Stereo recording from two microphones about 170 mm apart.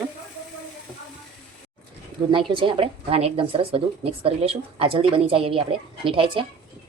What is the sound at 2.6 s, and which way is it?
A woman's voice, 30° right (ahead or behind).